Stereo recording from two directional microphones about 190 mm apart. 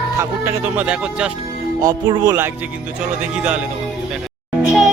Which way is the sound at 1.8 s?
20° right (ahead or behind).